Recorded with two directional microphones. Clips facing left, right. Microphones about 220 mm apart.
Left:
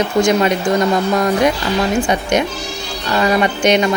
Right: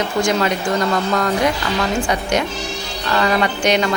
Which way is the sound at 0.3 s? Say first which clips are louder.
Left 4 dB; 20° left (ahead or behind).